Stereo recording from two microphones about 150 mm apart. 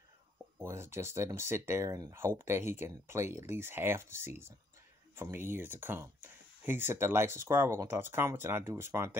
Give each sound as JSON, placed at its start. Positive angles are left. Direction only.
{"t": 0.6, "sound": "speech", "side_deg": -15}